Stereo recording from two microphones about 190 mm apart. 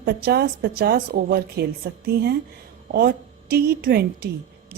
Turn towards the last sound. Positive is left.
turn(degrees=-55)  # may be behind; listen again after turning